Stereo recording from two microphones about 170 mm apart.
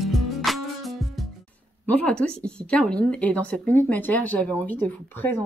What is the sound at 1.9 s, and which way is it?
Speech, 10° left (ahead or behind).